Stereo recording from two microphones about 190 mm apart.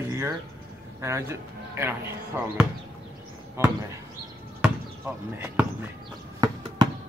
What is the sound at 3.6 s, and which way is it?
Speech, 15° right (ahead or behind).